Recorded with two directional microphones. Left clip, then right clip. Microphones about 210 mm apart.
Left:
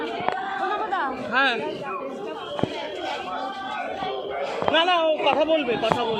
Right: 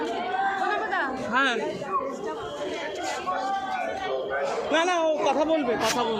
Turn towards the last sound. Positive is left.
turn(degrees=-40)  # may be behind; listen again after turning